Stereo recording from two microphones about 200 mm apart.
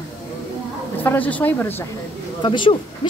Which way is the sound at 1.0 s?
10° left (ahead or behind).